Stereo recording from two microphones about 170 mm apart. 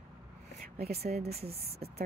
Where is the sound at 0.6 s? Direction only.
65° right (ahead or behind).